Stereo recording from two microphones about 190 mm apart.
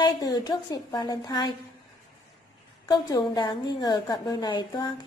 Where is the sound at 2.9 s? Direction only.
20° left (ahead or behind).